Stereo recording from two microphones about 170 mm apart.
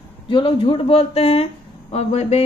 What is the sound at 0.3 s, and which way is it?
Speech, 30° left (ahead or behind).